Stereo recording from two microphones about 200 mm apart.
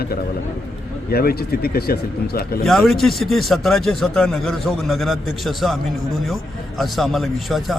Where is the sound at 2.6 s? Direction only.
Centre (ahead or behind).